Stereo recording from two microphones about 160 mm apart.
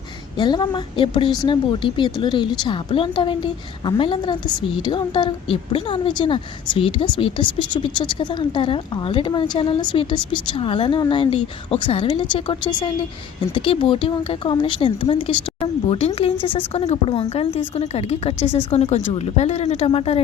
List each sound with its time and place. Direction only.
0.3 s a woman's voice: 30° left (ahead or behind)